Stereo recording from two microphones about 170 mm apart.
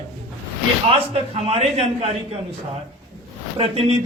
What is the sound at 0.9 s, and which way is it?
A man's voice, 35° right (ahead or behind).